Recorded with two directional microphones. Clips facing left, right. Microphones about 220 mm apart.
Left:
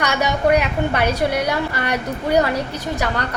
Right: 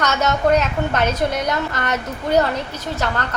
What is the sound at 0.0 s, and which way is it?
A woman's voice, 15° left (ahead or behind).